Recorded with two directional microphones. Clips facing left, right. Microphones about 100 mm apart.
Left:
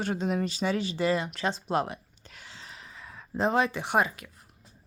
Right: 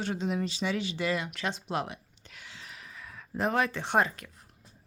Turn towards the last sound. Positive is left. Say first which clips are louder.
# left 1 dB
turn(degrees=5)  # may be behind; listen again after turning